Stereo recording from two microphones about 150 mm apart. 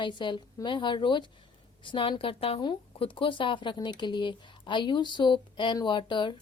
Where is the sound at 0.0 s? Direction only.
30° left (ahead or behind).